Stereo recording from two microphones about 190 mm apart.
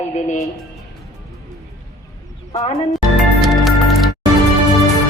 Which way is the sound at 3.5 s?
Centre (ahead or behind).